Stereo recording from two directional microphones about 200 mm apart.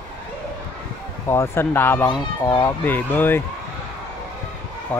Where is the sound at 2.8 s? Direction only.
10° left (ahead or behind).